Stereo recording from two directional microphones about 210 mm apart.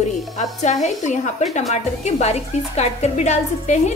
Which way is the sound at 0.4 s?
35° left (ahead or behind).